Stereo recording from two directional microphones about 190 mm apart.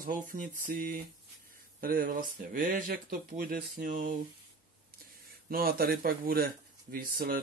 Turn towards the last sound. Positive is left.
turn(degrees=-50)  # may be behind; listen again after turning